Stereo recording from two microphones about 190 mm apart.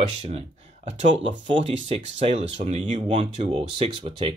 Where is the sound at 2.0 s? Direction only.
40° right (ahead or behind).